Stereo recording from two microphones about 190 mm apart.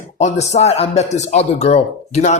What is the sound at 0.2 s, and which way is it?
Speech, 35° left (ahead or behind).